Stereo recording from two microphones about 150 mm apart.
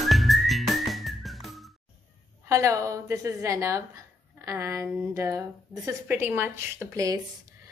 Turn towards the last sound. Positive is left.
turn(degrees=-20)  # may be behind; listen again after turning